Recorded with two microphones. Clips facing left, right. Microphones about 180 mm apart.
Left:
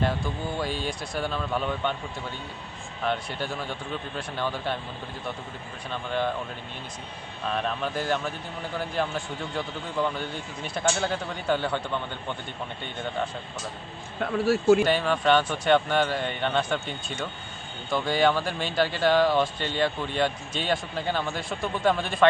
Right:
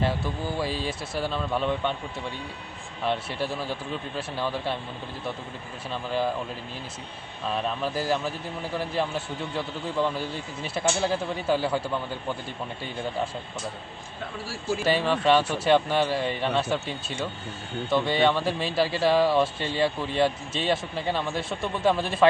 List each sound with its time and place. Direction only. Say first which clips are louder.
0.0 s a man's voice: even; centre (ahead or behind)
3.0 s a man's voice: right 1 dB; centre (ahead or behind)
5.9 s a man's voice: right 1 dB; 5° right (ahead or behind)
7.4 s a man's voice: right 1 dB; 5° right (ahead or behind)
14.2 s speech: left 13 dB; 60° left (ahead or behind)
14.8 s a man's voice: right 1 dB; centre (ahead or behind)